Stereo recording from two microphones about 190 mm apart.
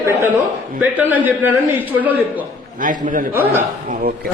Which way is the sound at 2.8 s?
45° right (ahead or behind).